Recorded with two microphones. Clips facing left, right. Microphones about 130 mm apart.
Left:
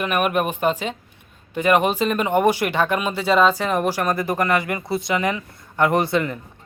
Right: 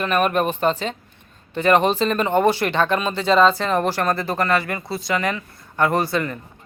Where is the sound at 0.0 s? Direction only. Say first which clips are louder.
Right 1 dB; 10° left (ahead or behind).